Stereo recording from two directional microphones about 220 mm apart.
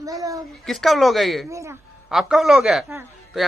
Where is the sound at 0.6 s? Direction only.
Centre (ahead or behind).